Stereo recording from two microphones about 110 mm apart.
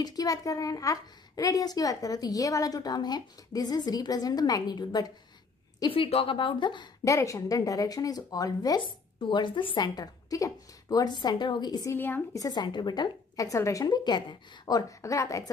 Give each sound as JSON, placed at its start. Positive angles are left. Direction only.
{"t": 0.0, "sound": "a woman's voice", "side_deg": 35}
{"t": 5.9, "sound": "a woman's voice", "side_deg": 60}
{"t": 7.1, "sound": "a woman's voice", "side_deg": 30}
{"t": 8.8, "sound": "speech", "side_deg": 45}
{"t": 9.9, "sound": "a woman's voice", "side_deg": 35}
{"t": 11.9, "sound": "a woman's voice", "side_deg": 20}
{"t": 12.4, "sound": "a woman's voice", "side_deg": 40}